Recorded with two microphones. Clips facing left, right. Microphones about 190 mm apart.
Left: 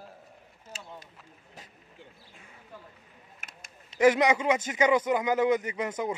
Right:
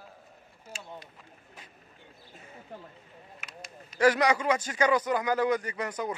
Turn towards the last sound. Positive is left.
turn(degrees=25)  # may be behind; listen again after turning